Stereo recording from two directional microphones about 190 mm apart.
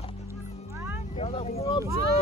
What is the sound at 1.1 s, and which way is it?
Speech, 30° left (ahead or behind).